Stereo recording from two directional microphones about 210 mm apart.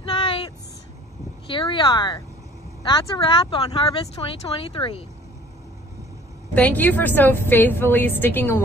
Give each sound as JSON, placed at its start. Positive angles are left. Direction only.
{"t": 0.1, "sound": "vehicle", "side_deg": 25}
{"t": 1.5, "sound": "speech", "side_deg": 25}
{"t": 6.5, "sound": "a woman's voice", "side_deg": 5}